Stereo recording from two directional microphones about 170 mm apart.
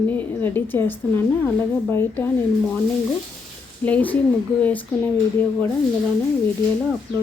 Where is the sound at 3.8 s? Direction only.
10° left (ahead or behind).